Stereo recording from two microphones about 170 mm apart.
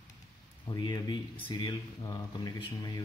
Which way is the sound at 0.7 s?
25° left (ahead or behind).